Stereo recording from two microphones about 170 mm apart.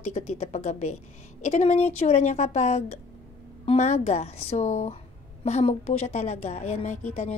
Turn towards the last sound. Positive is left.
turn(degrees=40)  # may be behind; listen again after turning